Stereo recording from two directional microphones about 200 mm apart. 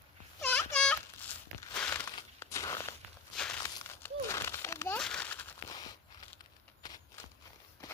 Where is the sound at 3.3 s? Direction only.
5° left (ahead or behind).